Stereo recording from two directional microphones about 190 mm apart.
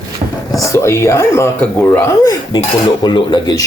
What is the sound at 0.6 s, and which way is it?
Speech, 15° left (ahead or behind).